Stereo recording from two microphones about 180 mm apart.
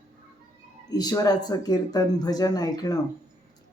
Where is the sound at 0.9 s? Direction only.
20° left (ahead or behind).